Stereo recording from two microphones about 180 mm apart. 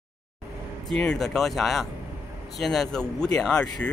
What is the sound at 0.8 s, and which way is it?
Speech, 5° left (ahead or behind).